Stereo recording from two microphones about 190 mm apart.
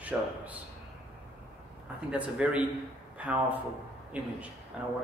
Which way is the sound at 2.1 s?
5° right (ahead or behind).